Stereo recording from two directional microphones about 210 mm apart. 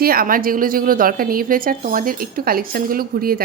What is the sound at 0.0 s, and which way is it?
A woman's voice, 45° right (ahead or behind).